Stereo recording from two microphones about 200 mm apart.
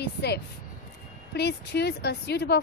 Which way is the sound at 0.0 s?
55° left (ahead or behind).